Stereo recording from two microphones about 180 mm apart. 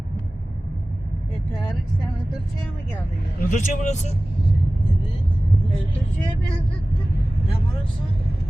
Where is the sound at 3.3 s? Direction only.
40° left (ahead or behind).